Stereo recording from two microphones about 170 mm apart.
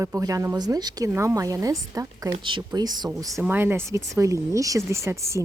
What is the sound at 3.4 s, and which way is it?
A woman's voice, 10° right (ahead or behind).